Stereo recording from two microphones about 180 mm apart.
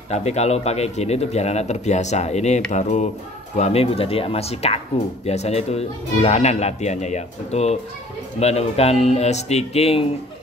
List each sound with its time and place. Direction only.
0.1 s speech: 35° left (ahead or behind)